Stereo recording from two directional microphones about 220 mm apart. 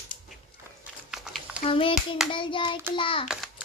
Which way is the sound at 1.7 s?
25° left (ahead or behind).